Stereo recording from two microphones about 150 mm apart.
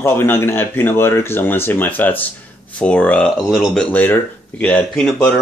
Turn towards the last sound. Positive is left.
turn(degrees=5)  # may be behind; listen again after turning